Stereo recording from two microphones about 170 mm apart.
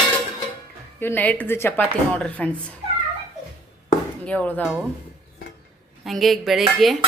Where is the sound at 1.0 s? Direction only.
10° left (ahead or behind).